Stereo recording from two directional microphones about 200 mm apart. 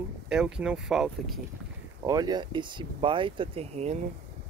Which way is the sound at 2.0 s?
20° right (ahead or behind).